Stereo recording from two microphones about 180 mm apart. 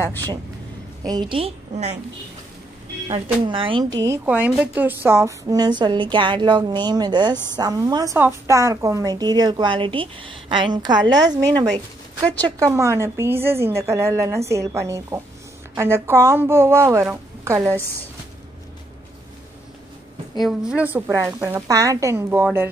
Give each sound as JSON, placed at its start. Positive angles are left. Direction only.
{"t": 1.0, "sound": "a woman's voice", "side_deg": -25}
{"t": 3.1, "sound": "a woman's voice", "side_deg": -30}
{"t": 4.0, "sound": "a woman's voice", "side_deg": -10}
{"t": 20.3, "sound": "a woman's voice", "side_deg": -5}